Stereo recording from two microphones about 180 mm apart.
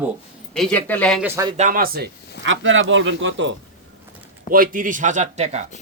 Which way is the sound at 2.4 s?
90° right.